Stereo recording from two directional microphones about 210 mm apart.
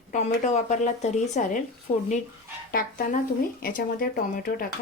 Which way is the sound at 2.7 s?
45° left (ahead or behind).